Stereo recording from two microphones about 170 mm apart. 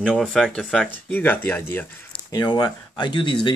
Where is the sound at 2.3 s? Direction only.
25° left (ahead or behind).